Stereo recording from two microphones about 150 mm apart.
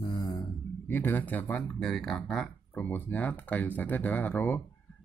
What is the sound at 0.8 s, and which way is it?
Speech, 15° left (ahead or behind).